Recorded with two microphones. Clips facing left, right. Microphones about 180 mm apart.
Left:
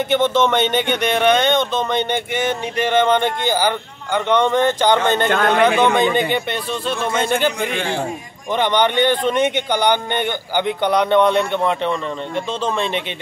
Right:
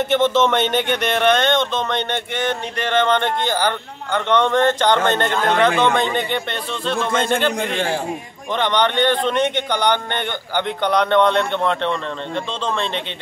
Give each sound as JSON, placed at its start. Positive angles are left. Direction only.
{"t": 0.1, "sound": "a man's voice", "side_deg": 0}
{"t": 7.7, "sound": "a man's voice", "side_deg": -35}
{"t": 8.5, "sound": "a man's voice", "side_deg": 10}